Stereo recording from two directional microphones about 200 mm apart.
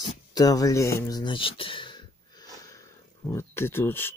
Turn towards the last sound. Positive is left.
turn(degrees=10)  # may be behind; listen again after turning